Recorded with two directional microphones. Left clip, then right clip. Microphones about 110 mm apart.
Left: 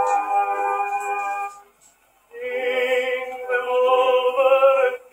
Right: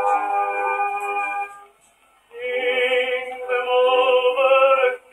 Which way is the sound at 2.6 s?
25° right (ahead or behind).